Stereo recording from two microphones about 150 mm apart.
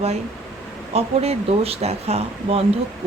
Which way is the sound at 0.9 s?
45° right (ahead or behind).